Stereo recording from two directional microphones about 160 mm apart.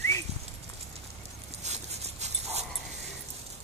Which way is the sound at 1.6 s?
45° right (ahead or behind).